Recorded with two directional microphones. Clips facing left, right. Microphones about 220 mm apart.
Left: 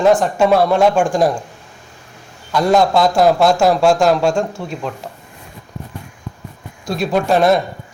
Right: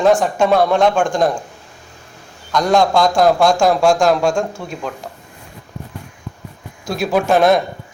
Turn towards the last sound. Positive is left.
turn(degrees=0)  # may be behind; listen again after turning